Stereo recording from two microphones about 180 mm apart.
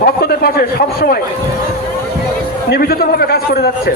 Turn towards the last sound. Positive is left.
turn(degrees=60)  # may be behind; listen again after turning